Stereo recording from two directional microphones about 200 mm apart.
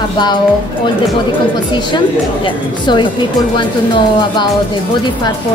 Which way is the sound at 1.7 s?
20° left (ahead or behind).